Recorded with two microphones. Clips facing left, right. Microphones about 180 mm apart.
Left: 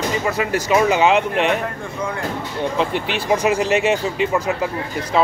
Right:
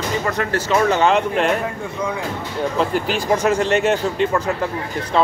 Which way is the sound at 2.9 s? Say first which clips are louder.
Right 2 dB; 40° right (ahead or behind).